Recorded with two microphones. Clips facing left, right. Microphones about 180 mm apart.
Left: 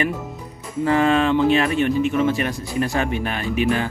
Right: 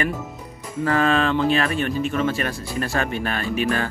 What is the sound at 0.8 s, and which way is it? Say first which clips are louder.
Speech: left 2 dB; 20° left (ahead or behind).